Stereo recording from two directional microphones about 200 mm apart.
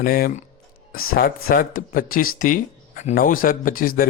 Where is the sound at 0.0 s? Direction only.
45° left (ahead or behind).